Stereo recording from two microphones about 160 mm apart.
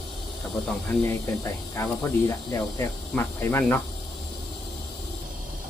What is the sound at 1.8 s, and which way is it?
Speech, 15° left (ahead or behind).